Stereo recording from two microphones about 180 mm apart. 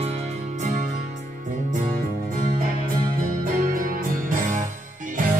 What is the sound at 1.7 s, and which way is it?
Music, 55° right (ahead or behind).